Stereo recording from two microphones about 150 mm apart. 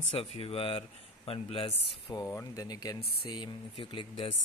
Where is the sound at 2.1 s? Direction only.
25° left (ahead or behind).